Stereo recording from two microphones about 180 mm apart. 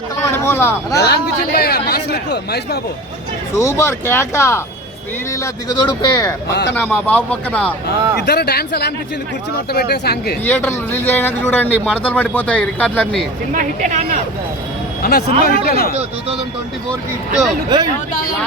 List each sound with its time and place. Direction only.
0.2 s speech: 15° left (ahead or behind)
0.9 s speech: 65° left (ahead or behind)
3.5 s speech: 15° left (ahead or behind)
6.5 s speech: 75° left (ahead or behind)
6.7 s speech: 10° left (ahead or behind)
8.3 s speech: 65° left (ahead or behind)
10.4 s speech: 10° left (ahead or behind)
13.5 s speech: 45° right (ahead or behind)
15.0 s speech: 60° left (ahead or behind)
17.7 s speech: 20° right (ahead or behind)